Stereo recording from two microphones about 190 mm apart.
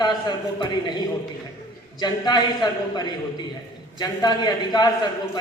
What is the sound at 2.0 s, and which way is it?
A man's voice, 20° left (ahead or behind).